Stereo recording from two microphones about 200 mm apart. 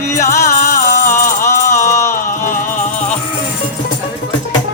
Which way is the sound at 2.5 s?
40° left (ahead or behind).